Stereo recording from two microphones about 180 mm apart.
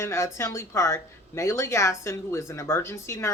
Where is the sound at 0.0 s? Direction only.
15° left (ahead or behind).